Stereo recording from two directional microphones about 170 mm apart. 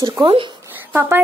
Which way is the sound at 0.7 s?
10° right (ahead or behind).